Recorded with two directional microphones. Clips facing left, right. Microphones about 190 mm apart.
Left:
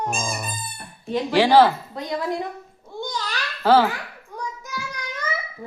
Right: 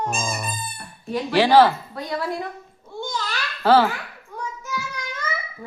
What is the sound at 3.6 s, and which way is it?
Speech, 10° left (ahead or behind).